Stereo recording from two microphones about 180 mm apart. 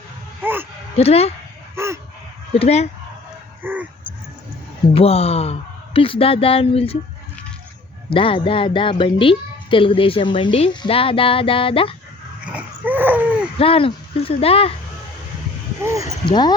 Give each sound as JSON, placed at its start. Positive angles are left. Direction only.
{"t": 0.4, "sound": "speech", "side_deg": -10}
{"t": 0.9, "sound": "speech", "side_deg": 35}
{"t": 1.7, "sound": "a sound", "side_deg": -15}
{"t": 2.6, "sound": "speech", "side_deg": 35}
{"t": 3.6, "sound": "dog", "side_deg": -10}
{"t": 4.9, "sound": "speech", "side_deg": 35}
{"t": 8.1, "sound": "speech", "side_deg": 30}
{"t": 12.5, "sound": "dog", "side_deg": -10}
{"t": 13.6, "sound": "speech", "side_deg": 30}
{"t": 15.8, "sound": "speech", "side_deg": -15}
{"t": 16.2, "sound": "speech", "side_deg": 25}